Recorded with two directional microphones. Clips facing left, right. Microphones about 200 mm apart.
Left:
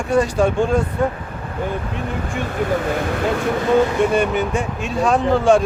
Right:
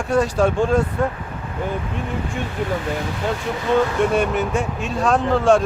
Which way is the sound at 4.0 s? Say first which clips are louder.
Left 1 dB; centre (ahead or behind).